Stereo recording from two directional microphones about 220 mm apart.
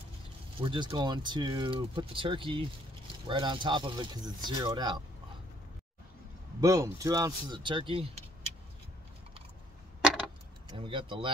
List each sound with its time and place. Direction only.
0.6 s speech: 25° right (ahead or behind)
6.6 s speech: 15° right (ahead or behind)
10.7 s speech: 20° right (ahead or behind)